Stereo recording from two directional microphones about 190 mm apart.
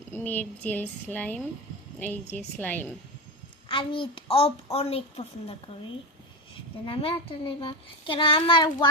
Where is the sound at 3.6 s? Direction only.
25° left (ahead or behind).